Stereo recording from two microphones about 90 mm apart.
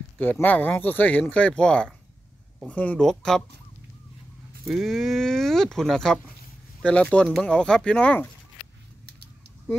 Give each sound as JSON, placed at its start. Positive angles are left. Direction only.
{"t": 0.2, "sound": "speech", "side_deg": 20}
{"t": 3.1, "sound": "speech", "side_deg": 5}
{"t": 4.6, "sound": "speech", "side_deg": 0}